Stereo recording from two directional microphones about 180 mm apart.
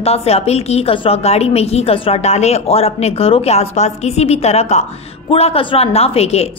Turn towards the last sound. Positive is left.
turn(degrees=35)  # may be behind; listen again after turning